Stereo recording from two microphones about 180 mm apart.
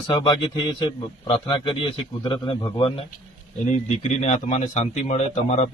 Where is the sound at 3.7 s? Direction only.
40° left (ahead or behind).